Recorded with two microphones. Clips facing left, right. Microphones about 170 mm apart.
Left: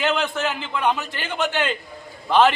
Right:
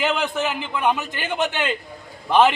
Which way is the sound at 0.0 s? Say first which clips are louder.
Even; 15° right (ahead or behind).